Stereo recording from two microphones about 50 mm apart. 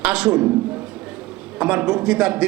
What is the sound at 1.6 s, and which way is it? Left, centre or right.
Speech, right.